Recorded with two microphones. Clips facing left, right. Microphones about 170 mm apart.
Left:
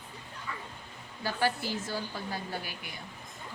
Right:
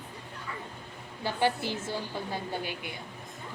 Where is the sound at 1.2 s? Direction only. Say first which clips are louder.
Right 2 dB; 20° right (ahead or behind).